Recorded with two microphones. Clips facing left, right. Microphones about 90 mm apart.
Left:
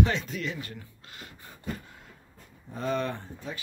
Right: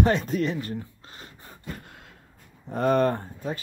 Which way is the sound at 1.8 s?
70° right (ahead or behind).